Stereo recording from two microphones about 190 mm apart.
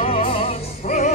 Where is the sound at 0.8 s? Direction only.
40° left (ahead or behind).